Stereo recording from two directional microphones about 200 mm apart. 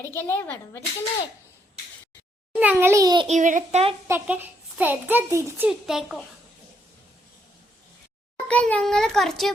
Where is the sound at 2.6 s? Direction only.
10° right (ahead or behind).